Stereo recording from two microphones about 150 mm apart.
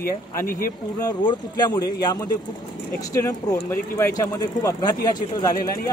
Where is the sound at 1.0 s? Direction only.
25° left (ahead or behind).